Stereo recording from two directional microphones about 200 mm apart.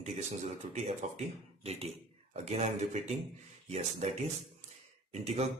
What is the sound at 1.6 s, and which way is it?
Speech, 30° right (ahead or behind).